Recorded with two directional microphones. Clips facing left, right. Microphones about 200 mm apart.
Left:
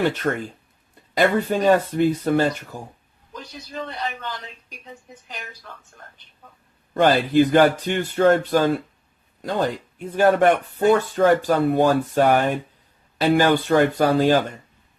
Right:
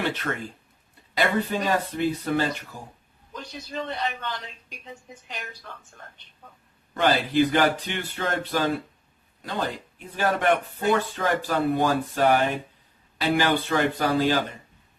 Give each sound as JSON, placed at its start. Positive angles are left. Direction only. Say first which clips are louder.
{"t": 0.0, "sound": "speech", "louder": "left 6 dB", "side_deg": 45}
{"t": 3.3, "sound": "speech", "louder": "even", "side_deg": 0}
{"t": 6.9, "sound": "speech", "louder": "left 5 dB", "side_deg": 45}